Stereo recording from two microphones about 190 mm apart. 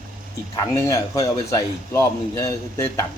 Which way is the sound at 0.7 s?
15° left (ahead or behind).